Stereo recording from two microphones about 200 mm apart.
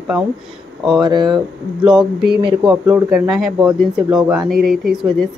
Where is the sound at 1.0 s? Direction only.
20° right (ahead or behind).